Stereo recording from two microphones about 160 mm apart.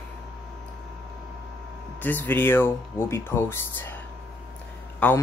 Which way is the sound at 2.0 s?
10° left (ahead or behind).